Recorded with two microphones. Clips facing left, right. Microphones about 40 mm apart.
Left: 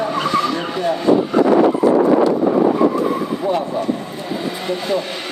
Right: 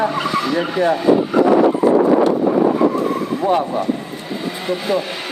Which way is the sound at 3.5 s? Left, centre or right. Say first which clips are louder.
Right 3 dB; centre.